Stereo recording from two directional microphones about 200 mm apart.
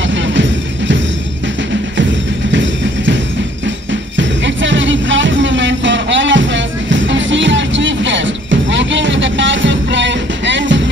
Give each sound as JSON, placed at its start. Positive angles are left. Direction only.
{"t": 0.0, "sound": "music", "side_deg": -65}
{"t": 2.5, "sound": "music", "side_deg": -65}
{"t": 4.2, "sound": "music", "side_deg": -65}